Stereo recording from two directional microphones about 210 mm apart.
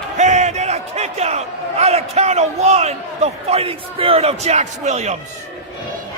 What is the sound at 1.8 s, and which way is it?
Speech, 30° right (ahead or behind).